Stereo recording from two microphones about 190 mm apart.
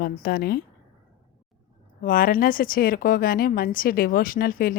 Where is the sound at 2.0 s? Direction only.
45° left (ahead or behind).